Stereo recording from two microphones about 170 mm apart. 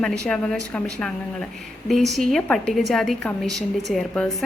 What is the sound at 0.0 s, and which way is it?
A woman's voice, 5° left (ahead or behind).